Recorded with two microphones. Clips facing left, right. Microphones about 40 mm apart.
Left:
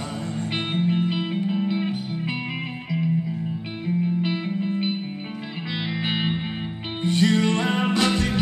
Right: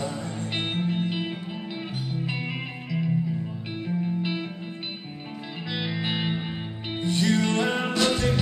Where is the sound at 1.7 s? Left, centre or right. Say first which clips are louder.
Left 5 dB; left.